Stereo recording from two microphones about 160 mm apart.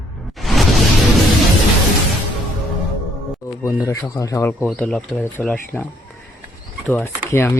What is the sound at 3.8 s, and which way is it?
Speech, 20° left (ahead or behind).